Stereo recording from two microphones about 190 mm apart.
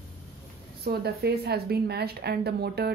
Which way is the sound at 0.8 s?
55° right (ahead or behind).